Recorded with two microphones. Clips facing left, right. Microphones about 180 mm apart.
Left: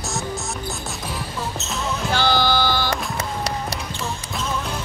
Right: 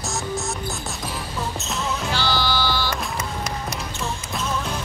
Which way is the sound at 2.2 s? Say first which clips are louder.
Left 6 dB; 50° left (ahead or behind).